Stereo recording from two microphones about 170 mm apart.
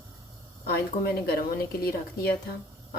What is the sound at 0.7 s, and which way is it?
A woman's voice, 65° left (ahead or behind).